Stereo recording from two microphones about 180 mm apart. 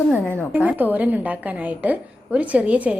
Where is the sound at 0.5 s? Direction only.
10° right (ahead or behind).